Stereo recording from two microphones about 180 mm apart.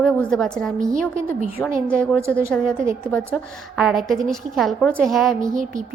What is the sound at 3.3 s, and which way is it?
A woman's voice, centre (ahead or behind).